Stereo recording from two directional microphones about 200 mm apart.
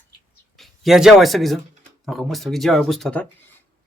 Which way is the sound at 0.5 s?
Centre (ahead or behind).